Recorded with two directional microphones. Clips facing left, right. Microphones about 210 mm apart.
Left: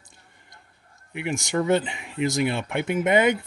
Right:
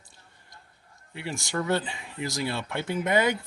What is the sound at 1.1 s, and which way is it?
Speech, 20° left (ahead or behind).